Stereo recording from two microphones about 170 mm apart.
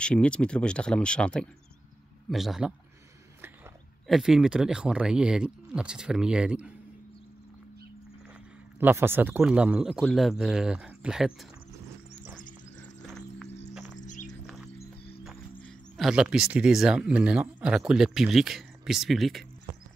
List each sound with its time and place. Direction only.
0.0 s a man's voice: 5° left (ahead or behind)
4.1 s a man's voice: 5° right (ahead or behind)
8.7 s a man's voice: 15° right (ahead or behind)
13.0 s music: centre (ahead or behind)
13.9 s music: 45° left (ahead or behind)
14.4 s music: centre (ahead or behind)
15.6 s speech: centre (ahead or behind)